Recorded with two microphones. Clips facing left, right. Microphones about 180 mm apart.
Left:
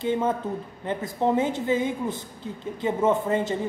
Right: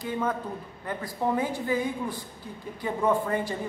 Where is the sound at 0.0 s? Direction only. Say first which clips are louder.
Left 5 dB; 25° left (ahead or behind).